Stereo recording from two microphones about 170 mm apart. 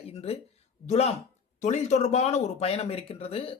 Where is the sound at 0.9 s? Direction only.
40° left (ahead or behind).